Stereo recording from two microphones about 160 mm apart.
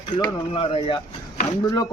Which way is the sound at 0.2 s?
30° left (ahead or behind).